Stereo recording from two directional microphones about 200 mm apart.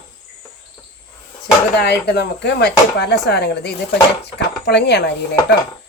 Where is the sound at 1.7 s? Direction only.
55° left (ahead or behind).